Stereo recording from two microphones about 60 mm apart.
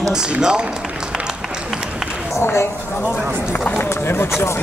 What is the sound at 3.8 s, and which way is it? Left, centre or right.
Run, left.